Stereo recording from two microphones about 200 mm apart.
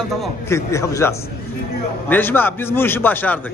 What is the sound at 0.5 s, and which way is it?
A man's voice, 15° left (ahead or behind).